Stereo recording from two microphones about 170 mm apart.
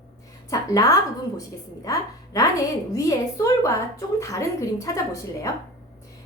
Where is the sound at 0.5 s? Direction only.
20° left (ahead or behind).